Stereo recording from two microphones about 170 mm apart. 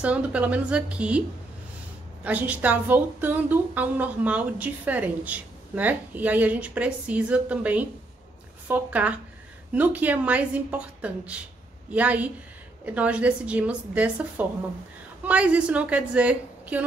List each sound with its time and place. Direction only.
0.0 s a woman's voice: 5° right (ahead or behind)
2.2 s a woman's voice: 10° right (ahead or behind)